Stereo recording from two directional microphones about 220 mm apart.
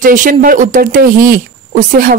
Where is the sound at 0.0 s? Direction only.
35° right (ahead or behind).